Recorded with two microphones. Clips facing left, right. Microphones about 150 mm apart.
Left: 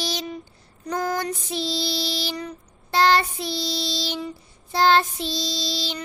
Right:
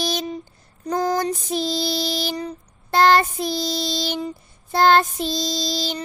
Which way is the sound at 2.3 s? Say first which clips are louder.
Right 3 dB; 30° right (ahead or behind).